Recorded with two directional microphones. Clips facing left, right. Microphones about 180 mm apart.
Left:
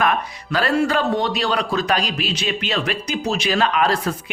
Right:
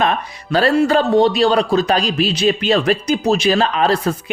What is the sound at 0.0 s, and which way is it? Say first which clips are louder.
Speech: right 2 dB; 30° right (ahead or behind).